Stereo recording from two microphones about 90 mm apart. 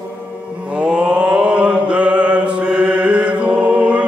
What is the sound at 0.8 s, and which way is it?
Mantra, 15° right (ahead or behind).